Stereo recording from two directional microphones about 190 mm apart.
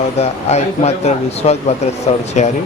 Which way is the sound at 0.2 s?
35° left (ahead or behind).